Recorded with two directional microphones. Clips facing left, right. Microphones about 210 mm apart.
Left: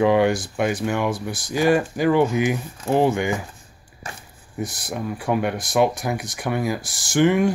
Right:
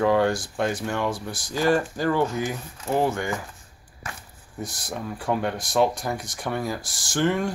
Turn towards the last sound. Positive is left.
turn(degrees=15)  # may be behind; listen again after turning